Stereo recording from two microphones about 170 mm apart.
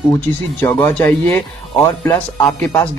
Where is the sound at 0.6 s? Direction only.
15° left (ahead or behind).